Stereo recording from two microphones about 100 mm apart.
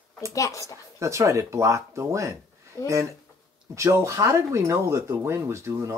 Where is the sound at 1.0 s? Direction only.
30° right (ahead or behind).